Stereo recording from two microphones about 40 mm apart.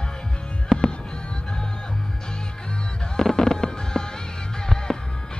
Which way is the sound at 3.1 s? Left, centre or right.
Centre.